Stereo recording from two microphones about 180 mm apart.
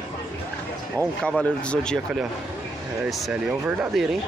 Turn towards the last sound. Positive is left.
turn(degrees=-5)  # may be behind; listen again after turning